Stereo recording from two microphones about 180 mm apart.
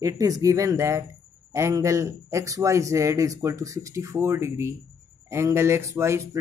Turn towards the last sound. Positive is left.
turn(degrees=-15)  # may be behind; listen again after turning